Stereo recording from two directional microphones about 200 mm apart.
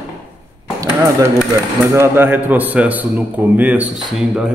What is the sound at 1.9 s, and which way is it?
A man's voice, 10° right (ahead or behind).